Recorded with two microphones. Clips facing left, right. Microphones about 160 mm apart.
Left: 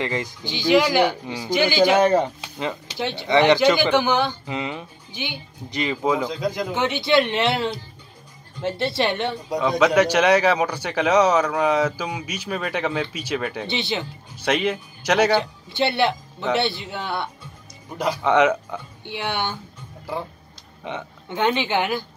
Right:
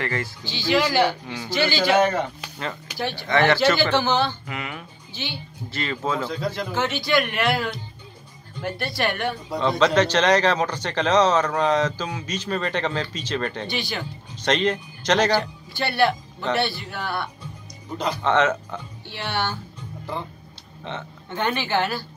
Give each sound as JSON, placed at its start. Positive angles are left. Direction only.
{"t": 0.0, "sound": "speech", "side_deg": 15}
{"t": 2.0, "sound": "a man's voice", "side_deg": 30}
{"t": 9.6, "sound": "speech", "side_deg": 10}
{"t": 13.7, "sound": "a man's voice", "side_deg": 25}
{"t": 14.3, "sound": "speech", "side_deg": 10}
{"t": 15.3, "sound": "a man's voice", "side_deg": 20}
{"t": 17.9, "sound": "speech", "side_deg": 10}
{"t": 20.8, "sound": "speech", "side_deg": 15}